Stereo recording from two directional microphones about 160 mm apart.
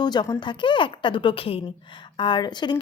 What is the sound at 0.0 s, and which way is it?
Speech, 25° left (ahead or behind).